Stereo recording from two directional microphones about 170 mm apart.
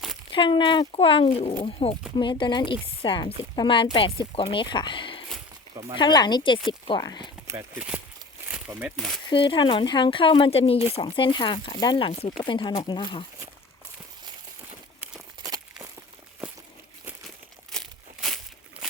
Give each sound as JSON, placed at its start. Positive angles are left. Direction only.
{"t": 0.3, "sound": "speech", "side_deg": 30}
{"t": 7.4, "sound": "speech", "side_deg": -15}
{"t": 8.4, "sound": "crumpling", "side_deg": -10}
{"t": 9.0, "sound": "speech", "side_deg": 0}
{"t": 9.3, "sound": "speech", "side_deg": 30}
{"t": 15.4, "sound": "walk", "side_deg": -20}
{"t": 16.4, "sound": "a sound", "side_deg": -5}
{"t": 17.7, "sound": "crumpling", "side_deg": 0}